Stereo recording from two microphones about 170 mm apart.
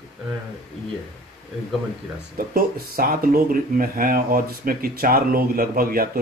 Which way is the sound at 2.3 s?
60° right (ahead or behind).